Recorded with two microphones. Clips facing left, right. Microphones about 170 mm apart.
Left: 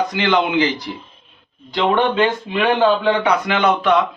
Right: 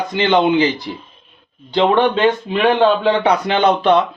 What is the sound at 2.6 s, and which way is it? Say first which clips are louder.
Speech: right 2 dB; 30° right (ahead or behind).